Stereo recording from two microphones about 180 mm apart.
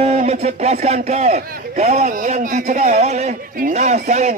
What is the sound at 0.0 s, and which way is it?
A man's voice, 35° right (ahead or behind).